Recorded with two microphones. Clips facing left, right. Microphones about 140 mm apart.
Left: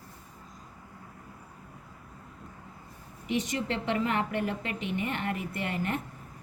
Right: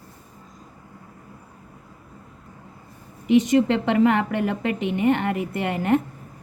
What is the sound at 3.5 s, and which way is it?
A woman's voice, 80° right.